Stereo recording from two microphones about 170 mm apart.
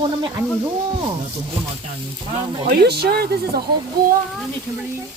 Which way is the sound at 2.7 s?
70° right (ahead or behind).